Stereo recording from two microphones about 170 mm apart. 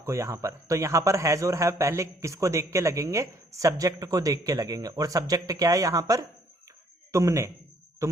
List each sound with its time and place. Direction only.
0.0 s a man's voice: 15° right (ahead or behind)